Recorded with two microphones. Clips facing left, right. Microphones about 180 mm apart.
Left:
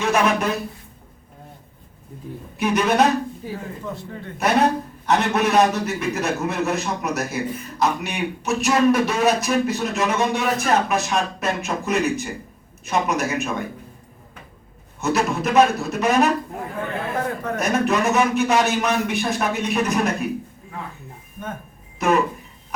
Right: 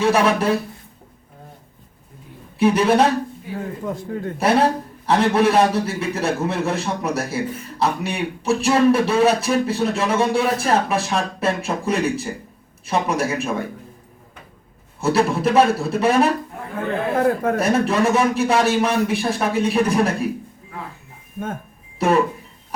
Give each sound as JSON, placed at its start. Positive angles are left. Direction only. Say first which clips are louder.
{"t": 0.0, "sound": "a man's voice", "louder": "right 3 dB", "side_deg": -30}
{"t": 2.6, "sound": "a man's voice", "louder": "right 3 dB", "side_deg": -30}
{"t": 3.8, "sound": "a man's voice", "louder": "right 6 dB", "side_deg": -45}
{"t": 4.4, "sound": "a man's voice", "louder": "right 1 dB", "side_deg": -30}
{"t": 15.0, "sound": "a man's voice", "louder": "right 3 dB", "side_deg": -30}
{"t": 17.6, "sound": "a man's voice", "louder": "left 2 dB", "side_deg": -30}
{"t": 21.3, "sound": "speech", "louder": "right 5 dB", "side_deg": -50}
{"t": 21.9, "sound": "speech", "louder": "right 1 dB", "side_deg": -30}